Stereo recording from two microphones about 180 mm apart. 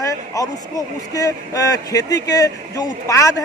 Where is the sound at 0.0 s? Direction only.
20° left (ahead or behind).